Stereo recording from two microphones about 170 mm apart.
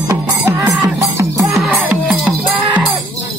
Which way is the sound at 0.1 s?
20° right (ahead or behind).